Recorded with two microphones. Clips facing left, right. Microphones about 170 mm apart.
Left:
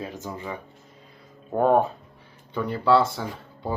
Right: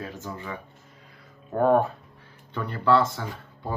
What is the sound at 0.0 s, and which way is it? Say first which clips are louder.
Speech: left 2 dB; 20° left (ahead or behind).